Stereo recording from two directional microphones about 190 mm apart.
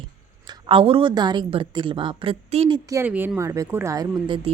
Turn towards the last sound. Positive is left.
turn(degrees=-20)  # may be behind; listen again after turning